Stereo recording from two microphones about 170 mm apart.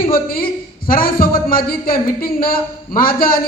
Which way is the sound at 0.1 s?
60° left (ahead or behind).